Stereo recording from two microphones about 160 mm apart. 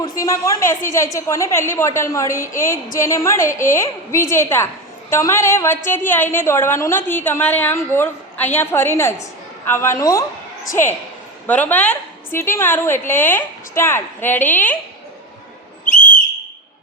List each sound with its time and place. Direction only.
0.0 s a woman's voice: 20° left (ahead or behind)
11.4 s a woman's voice: 10° left (ahead or behind)
15.8 s whistle: 55° left (ahead or behind)